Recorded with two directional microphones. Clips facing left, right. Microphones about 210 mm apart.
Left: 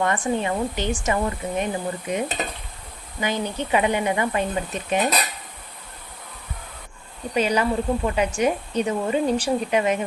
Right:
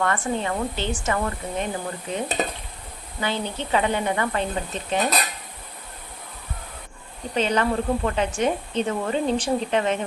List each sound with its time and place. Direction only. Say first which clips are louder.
0.0 s speech: left 2 dB; 15° left (ahead or behind)
7.3 s speech: left 1 dB; 10° left (ahead or behind)